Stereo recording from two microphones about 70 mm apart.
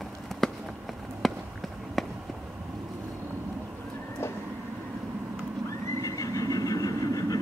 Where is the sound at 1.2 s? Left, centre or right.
Centre.